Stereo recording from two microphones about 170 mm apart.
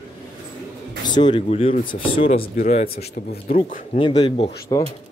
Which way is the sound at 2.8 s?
65° left (ahead or behind).